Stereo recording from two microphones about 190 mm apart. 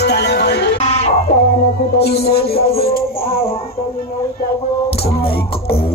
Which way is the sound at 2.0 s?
60° left (ahead or behind).